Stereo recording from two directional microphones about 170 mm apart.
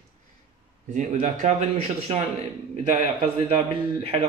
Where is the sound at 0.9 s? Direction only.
45° right (ahead or behind).